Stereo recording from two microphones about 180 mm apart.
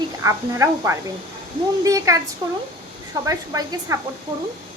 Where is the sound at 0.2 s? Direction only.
15° right (ahead or behind).